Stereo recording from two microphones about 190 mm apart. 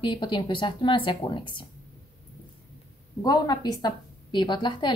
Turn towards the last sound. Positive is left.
turn(degrees=25)  # may be behind; listen again after turning